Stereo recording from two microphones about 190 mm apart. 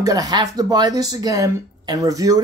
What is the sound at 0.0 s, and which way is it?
Speech, 20° right (ahead or behind).